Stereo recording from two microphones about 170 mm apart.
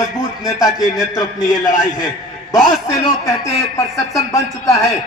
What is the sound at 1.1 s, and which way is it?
A man's voice, 20° left (ahead or behind).